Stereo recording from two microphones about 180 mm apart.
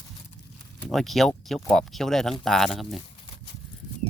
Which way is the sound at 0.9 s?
Centre (ahead or behind).